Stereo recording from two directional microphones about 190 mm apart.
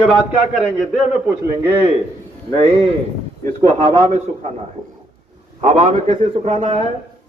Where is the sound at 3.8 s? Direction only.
35° right (ahead or behind).